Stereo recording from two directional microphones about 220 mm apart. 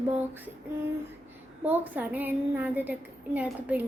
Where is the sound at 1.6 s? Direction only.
10° right (ahead or behind).